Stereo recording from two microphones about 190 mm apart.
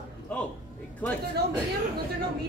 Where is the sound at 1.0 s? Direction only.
10° left (ahead or behind).